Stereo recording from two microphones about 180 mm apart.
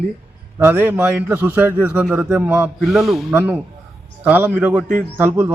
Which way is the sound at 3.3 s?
10° right (ahead or behind).